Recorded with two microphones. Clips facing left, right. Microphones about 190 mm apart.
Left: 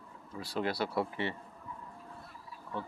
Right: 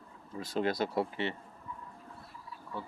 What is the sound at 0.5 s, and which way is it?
Speech, 20° right (ahead or behind).